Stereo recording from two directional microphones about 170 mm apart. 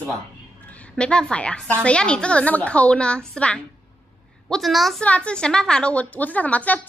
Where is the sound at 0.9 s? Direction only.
5° left (ahead or behind).